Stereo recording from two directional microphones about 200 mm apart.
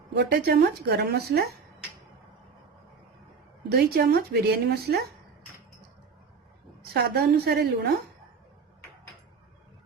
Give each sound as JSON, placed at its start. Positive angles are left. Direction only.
{"t": 0.1, "sound": "a woman's voice", "side_deg": -55}
{"t": 3.7, "sound": "a woman's voice", "side_deg": -50}
{"t": 6.9, "sound": "a woman's voice", "side_deg": -55}